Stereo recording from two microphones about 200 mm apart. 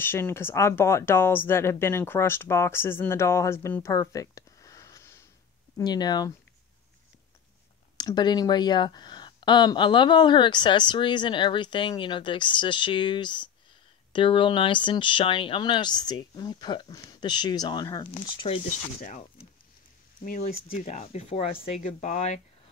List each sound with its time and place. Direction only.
0.0 s speech: 10° left (ahead or behind)
8.0 s speech: 20° left (ahead or behind)
18.9 s speech: 40° left (ahead or behind)
20.2 s speech: 40° left (ahead or behind)